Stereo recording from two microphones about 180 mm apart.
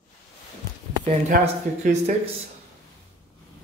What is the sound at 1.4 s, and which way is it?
Speech, 35° right (ahead or behind).